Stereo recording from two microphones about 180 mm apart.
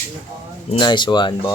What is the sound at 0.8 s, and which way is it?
Speech, 25° left (ahead or behind).